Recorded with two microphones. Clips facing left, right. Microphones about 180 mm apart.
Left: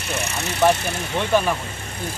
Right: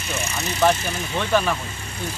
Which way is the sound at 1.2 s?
15° left (ahead or behind).